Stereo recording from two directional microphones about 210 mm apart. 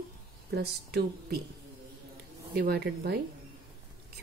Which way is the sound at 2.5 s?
50° right (ahead or behind).